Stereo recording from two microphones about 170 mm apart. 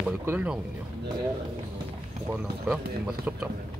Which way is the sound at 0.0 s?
10° right (ahead or behind).